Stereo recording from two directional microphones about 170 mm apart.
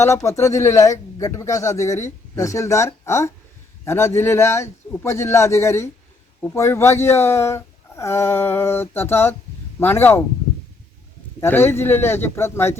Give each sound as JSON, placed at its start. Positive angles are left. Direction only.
{"t": 0.0, "sound": "a man's voice", "side_deg": 15}
{"t": 11.3, "sound": "a man's voice", "side_deg": 15}